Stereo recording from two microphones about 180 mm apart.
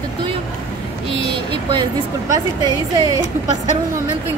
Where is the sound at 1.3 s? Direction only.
25° right (ahead or behind).